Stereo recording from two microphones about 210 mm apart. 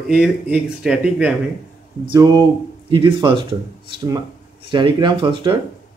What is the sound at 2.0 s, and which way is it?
Speech, 20° right (ahead or behind).